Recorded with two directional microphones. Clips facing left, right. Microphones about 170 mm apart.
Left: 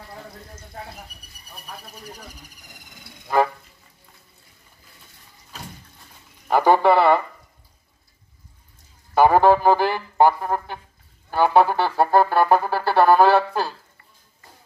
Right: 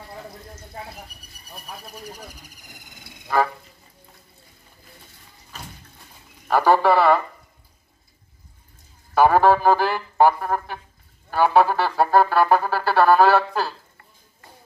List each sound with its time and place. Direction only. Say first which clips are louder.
6.4 s a man's voice: left 1 dB; 20° left (ahead or behind)
9.1 s music: left 1 dB; 20° left (ahead or behind)